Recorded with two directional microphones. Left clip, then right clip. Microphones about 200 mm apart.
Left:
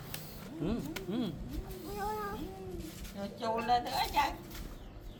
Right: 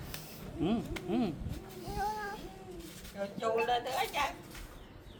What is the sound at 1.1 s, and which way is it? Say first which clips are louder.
Speech: right 5 dB; 30° right (ahead or behind).